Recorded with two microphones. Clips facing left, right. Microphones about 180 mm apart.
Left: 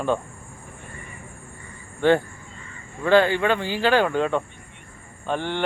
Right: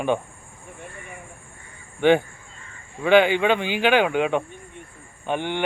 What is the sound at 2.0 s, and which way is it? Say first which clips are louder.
Speech: right 1 dB; 20° right (ahead or behind).